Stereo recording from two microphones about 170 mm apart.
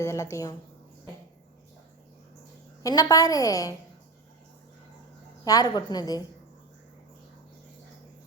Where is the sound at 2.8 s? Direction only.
20° left (ahead or behind).